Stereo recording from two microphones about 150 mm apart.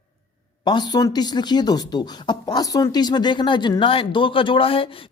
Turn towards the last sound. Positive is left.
turn(degrees=35)  # may be behind; listen again after turning